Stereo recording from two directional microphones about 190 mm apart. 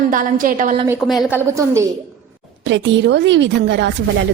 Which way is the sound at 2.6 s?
70° right (ahead or behind).